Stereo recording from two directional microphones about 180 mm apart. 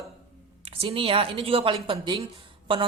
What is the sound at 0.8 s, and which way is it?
A woman's voice, 30° right (ahead or behind).